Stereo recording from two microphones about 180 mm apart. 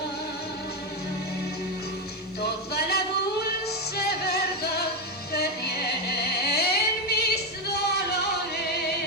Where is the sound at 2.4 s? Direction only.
65° left (ahead or behind).